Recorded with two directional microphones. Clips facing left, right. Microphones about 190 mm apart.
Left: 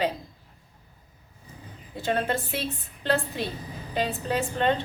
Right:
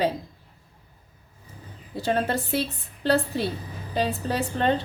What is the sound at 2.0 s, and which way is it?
A woman's voice, 40° right (ahead or behind).